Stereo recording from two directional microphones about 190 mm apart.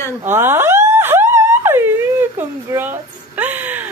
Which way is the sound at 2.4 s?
10° right (ahead or behind).